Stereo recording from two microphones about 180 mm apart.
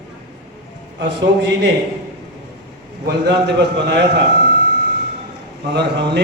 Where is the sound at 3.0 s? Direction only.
70° right (ahead or behind).